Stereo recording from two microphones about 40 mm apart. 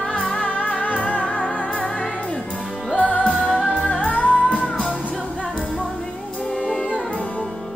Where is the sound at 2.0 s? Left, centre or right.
Left.